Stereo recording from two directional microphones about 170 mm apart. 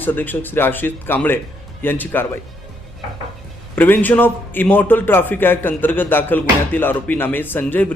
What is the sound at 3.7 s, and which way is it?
A man's voice, 10° left (ahead or behind).